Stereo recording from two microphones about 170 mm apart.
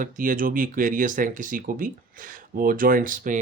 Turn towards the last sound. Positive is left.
turn(degrees=-50)  # may be behind; listen again after turning